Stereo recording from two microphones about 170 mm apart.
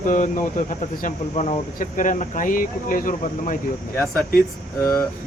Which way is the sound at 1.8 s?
50° left (ahead or behind).